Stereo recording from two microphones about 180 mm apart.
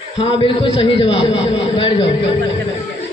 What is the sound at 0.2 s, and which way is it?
A man's voice, 30° left (ahead or behind).